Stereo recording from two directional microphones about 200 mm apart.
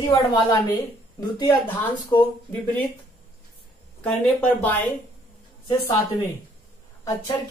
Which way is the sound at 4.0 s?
5° left (ahead or behind).